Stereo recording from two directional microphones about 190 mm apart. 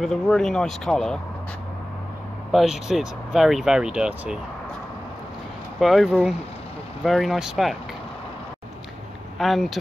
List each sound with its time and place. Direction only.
0.0 s speech: 5° left (ahead or behind)
2.5 s speech: centre (ahead or behind)
5.8 s speech: centre (ahead or behind)
9.4 s speech: centre (ahead or behind)